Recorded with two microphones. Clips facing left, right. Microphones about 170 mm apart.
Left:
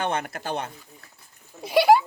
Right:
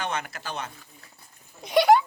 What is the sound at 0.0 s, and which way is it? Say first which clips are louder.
Speech: left 4 dB; 55° left (ahead or behind).